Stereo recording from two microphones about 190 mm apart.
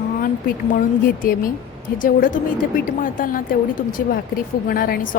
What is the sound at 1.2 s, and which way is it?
A woman's voice, 50° left (ahead or behind).